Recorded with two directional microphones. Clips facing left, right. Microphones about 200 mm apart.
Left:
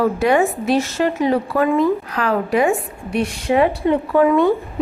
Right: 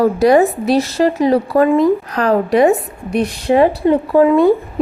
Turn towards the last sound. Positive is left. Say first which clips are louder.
# right 4 dB
turn(degrees=-35)  # may be behind; listen again after turning